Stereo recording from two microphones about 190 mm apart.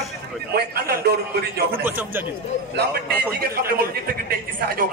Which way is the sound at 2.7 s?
60° right (ahead or behind).